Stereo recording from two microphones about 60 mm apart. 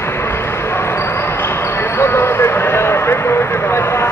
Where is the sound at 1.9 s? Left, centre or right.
Left.